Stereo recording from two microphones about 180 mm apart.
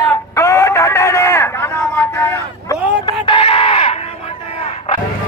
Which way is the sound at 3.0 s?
25° left (ahead or behind).